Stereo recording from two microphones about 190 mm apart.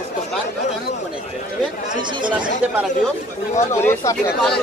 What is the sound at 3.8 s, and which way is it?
Speech, 10° left (ahead or behind).